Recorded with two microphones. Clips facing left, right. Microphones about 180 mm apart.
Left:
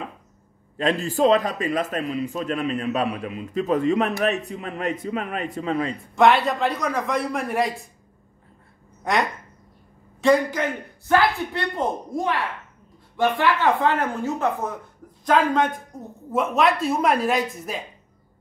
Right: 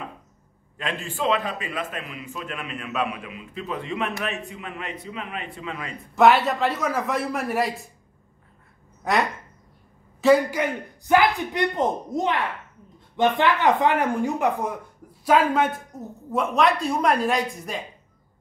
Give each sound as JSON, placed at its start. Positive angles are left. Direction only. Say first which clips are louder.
{"t": 0.7, "sound": "a man's voice", "louder": "left 8 dB", "side_deg": 35}
{"t": 6.1, "sound": "a man's voice", "louder": "even", "side_deg": 0}
{"t": 9.0, "sound": "a man's voice", "louder": "even", "side_deg": 0}